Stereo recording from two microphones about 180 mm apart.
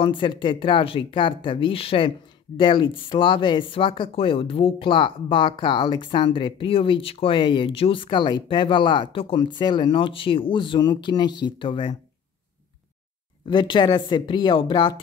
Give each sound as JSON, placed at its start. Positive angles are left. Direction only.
{"t": 0.0, "sound": "speech", "side_deg": 30}
{"t": 13.5, "sound": "speech", "side_deg": 25}